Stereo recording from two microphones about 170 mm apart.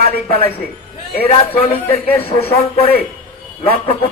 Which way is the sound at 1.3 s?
35° left (ahead or behind).